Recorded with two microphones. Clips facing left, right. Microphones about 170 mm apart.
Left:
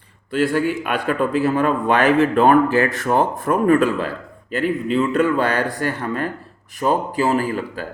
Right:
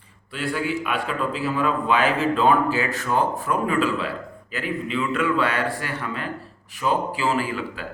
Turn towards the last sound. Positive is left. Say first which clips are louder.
# left 5 dB
turn(degrees=45)  # may be behind; listen again after turning